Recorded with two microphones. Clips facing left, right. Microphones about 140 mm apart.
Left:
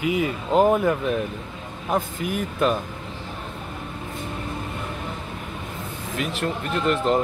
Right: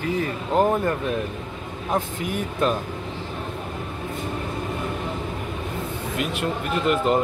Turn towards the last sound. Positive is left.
turn(degrees=-5)  # may be behind; listen again after turning